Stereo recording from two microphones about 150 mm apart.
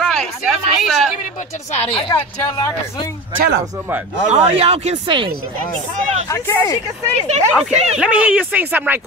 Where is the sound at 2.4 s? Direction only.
15° left (ahead or behind).